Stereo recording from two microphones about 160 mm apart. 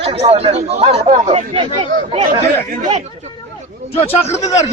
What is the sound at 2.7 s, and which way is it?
Speech, 50° right (ahead or behind).